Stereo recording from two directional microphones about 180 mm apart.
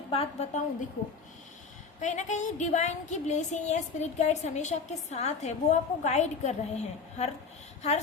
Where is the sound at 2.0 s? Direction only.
40° left (ahead or behind).